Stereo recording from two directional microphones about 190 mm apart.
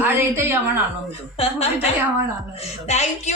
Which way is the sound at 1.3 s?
30° left (ahead or behind).